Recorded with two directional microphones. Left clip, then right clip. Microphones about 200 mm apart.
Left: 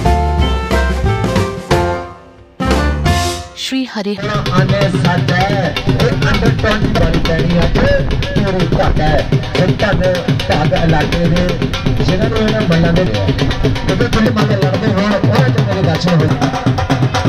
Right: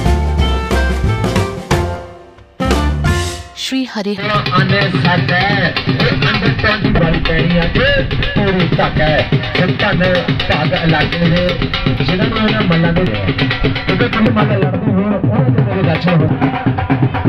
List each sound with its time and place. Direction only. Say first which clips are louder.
2.6 s music: left 1 dB; centre (ahead or behind)
4.6 s speech: right 1 dB; 35° left (ahead or behind)
9.8 s music: right 1 dB; 40° left (ahead or behind); by 15.4 s 75° left (ahead or behind)